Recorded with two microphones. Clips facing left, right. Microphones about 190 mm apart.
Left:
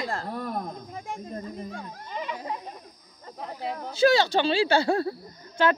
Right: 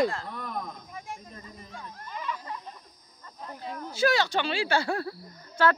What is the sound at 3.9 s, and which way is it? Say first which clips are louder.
Speech: left 5 dB; 25° left (ahead or behind).